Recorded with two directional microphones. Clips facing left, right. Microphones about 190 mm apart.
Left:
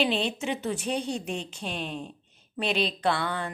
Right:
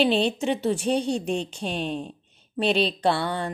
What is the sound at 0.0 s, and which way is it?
Speech, 30° right (ahead or behind).